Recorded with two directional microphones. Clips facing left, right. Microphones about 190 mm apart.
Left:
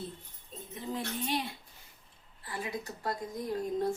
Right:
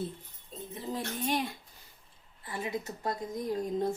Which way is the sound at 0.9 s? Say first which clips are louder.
Right 2 dB; 45° right (ahead or behind).